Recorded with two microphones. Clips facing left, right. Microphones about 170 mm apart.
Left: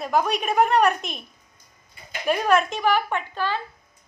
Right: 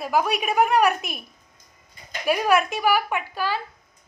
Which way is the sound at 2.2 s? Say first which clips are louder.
Even; 10° right (ahead or behind).